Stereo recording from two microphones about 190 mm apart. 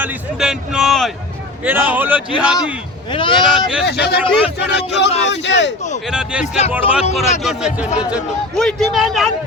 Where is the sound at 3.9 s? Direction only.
60° left (ahead or behind).